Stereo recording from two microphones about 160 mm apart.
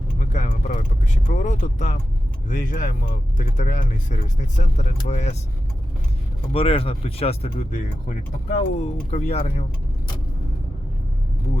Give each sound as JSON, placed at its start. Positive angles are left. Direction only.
{"t": 0.2, "sound": "speech", "side_deg": 50}
{"t": 6.5, "sound": "speech", "side_deg": 35}
{"t": 7.7, "sound": "speech", "side_deg": 55}